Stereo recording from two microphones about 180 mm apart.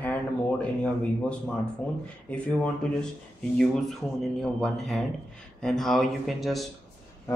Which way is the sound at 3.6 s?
Centre (ahead or behind).